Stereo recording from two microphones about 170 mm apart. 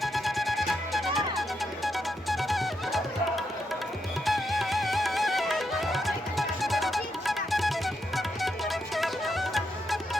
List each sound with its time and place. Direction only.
0.0 s music: centre (ahead or behind)